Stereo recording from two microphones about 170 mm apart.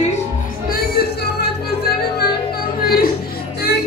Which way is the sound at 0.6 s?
65° left (ahead or behind).